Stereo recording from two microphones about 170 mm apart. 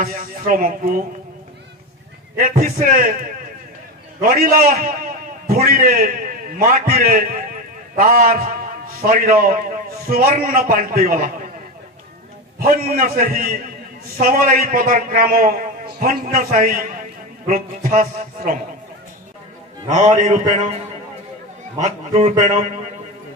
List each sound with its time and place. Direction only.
0.5 s a man's voice: 55° right (ahead or behind)
2.3 s a man's voice: 55° right (ahead or behind)
4.2 s a man's voice: 55° right (ahead or behind)
12.5 s a man's voice: 55° right (ahead or behind)
19.9 s a man's voice: 45° right (ahead or behind)
21.7 s a man's voice: 45° right (ahead or behind)